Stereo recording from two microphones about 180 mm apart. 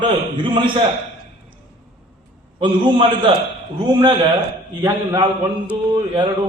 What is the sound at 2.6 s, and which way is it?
Speech, 25° right (ahead or behind).